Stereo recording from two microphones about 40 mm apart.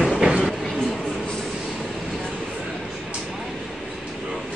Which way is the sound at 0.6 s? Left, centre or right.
Centre.